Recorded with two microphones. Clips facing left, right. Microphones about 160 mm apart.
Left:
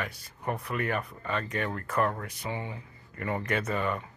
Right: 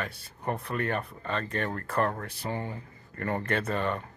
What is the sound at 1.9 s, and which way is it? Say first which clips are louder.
Speech: left 1 dB; 30° right (ahead or behind).